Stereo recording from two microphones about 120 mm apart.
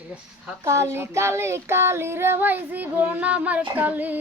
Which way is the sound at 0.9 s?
20° right (ahead or behind).